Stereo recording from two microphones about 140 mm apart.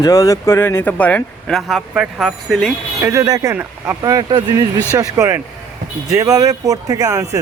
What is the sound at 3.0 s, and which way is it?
Speech, 20° right (ahead or behind).